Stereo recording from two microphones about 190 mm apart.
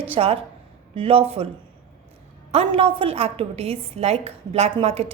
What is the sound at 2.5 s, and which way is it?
A woman's voice, 30° right (ahead or behind).